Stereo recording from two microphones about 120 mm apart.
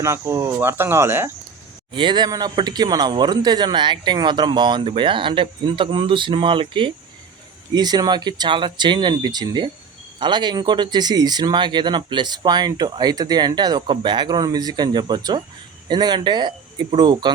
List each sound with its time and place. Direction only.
0.0 s speech: 25° right (ahead or behind)
1.9 s speech: 40° right (ahead or behind)